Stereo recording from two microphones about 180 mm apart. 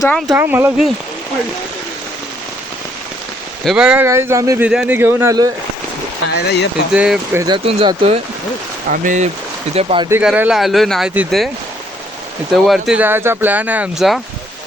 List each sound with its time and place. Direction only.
0.3 s speech: 10° right (ahead or behind)
3.6 s speech: centre (ahead or behind)
6.3 s speech: 65° left (ahead or behind)
6.9 s speech: 5° right (ahead or behind)
7.4 s speech: 30° right (ahead or behind)
8.9 s speech: 45° right (ahead or behind)
9.7 s speech: 30° right (ahead or behind)
10.1 s speech: 10° right (ahead or behind)
12.6 s speech: centre (ahead or behind)